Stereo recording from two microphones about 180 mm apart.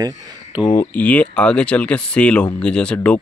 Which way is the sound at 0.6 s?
20° left (ahead or behind).